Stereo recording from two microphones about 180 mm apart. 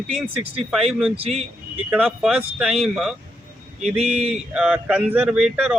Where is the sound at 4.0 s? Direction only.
35° right (ahead or behind).